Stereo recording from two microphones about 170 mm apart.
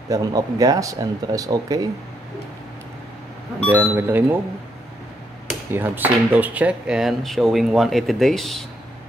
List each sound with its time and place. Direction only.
0.1 s speech: 20° right (ahead or behind)
3.6 s speech: 10° right (ahead or behind)
5.7 s speech: 10° right (ahead or behind)